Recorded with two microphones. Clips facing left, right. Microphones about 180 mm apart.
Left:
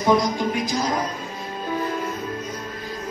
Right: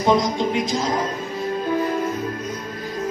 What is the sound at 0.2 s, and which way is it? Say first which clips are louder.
Music: right 2 dB; 25° right (ahead or behind).